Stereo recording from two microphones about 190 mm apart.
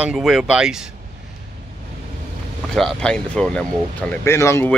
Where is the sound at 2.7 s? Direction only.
Centre (ahead or behind).